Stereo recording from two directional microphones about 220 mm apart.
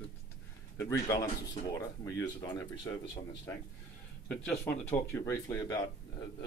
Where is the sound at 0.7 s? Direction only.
15° left (ahead or behind).